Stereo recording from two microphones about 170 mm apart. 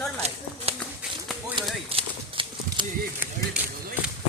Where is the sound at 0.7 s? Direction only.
35° right (ahead or behind).